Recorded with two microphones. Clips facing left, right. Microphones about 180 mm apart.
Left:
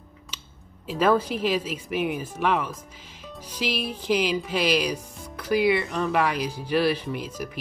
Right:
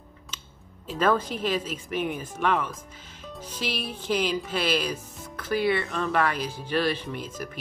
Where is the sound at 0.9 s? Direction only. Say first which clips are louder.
Left 3 dB; 10° left (ahead or behind).